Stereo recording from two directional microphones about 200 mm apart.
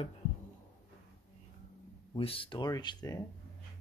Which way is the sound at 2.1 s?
25° left (ahead or behind).